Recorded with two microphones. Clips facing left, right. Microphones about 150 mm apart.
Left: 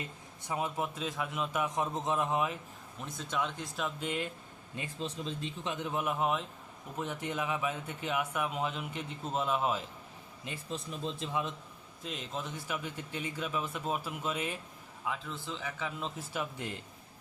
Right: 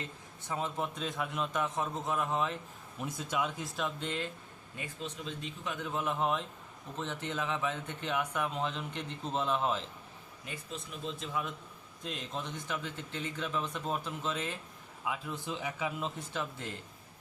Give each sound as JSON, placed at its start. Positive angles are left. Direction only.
{"t": 0.0, "sound": "speech", "side_deg": 10}
{"t": 3.0, "sound": "speech", "side_deg": -10}
{"t": 4.8, "sound": "speech", "side_deg": 30}
{"t": 5.7, "sound": "speech", "side_deg": 15}
{"t": 10.4, "sound": "a man's voice", "side_deg": 30}
{"t": 12.0, "sound": "speech", "side_deg": 0}
{"t": 15.0, "sound": "a man's voice", "side_deg": -10}
{"t": 16.0, "sound": "speech", "side_deg": 0}
{"t": 16.3, "sound": "speech", "side_deg": 15}